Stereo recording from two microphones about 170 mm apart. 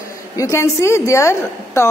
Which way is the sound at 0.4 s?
15° left (ahead or behind).